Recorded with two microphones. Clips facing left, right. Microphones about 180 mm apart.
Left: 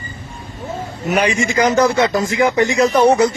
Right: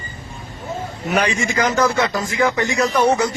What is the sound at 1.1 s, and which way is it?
A man's voice, 15° left (ahead or behind).